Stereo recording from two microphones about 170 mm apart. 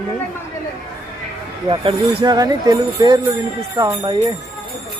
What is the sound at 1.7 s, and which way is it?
Speech, 30° right (ahead or behind).